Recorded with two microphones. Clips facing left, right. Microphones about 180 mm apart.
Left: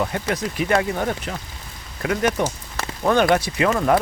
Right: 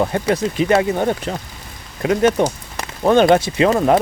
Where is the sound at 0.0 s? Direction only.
30° right (ahead or behind).